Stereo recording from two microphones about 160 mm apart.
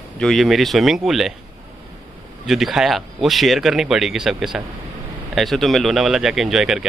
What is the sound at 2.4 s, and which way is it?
A man's voice, centre (ahead or behind).